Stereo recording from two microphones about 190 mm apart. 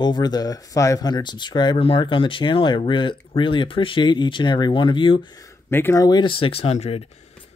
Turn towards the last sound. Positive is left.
turn(degrees=35)  # may be behind; listen again after turning